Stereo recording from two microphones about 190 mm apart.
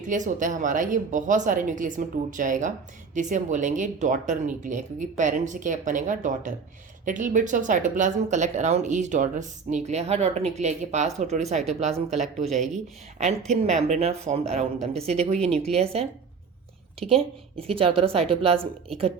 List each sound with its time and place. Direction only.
0.1 s speech: 40° right (ahead or behind)
17.1 s speech: 30° right (ahead or behind)